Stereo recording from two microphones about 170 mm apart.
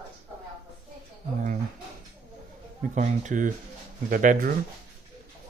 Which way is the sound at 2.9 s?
50° right (ahead or behind).